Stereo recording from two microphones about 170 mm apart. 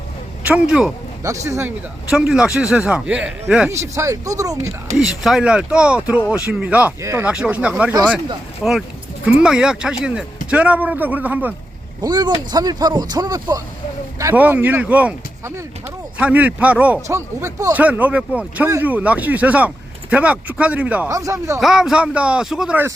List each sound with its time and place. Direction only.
0.4 s speech: 5° right (ahead or behind)
1.2 s a man's voice: 20° right (ahead or behind)
2.0 s speech: 5° right (ahead or behind)
3.7 s a man's voice: 15° right (ahead or behind)
4.9 s a man's voice: centre (ahead or behind)
12.0 s a man's voice: 25° right (ahead or behind); by 21.1 s 10° right (ahead or behind)
21.1 s speech: 20° right (ahead or behind)
21.6 s speech: centre (ahead or behind)